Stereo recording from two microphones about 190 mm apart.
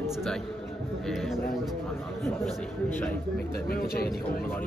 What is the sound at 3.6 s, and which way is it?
Speech, 50° left (ahead or behind).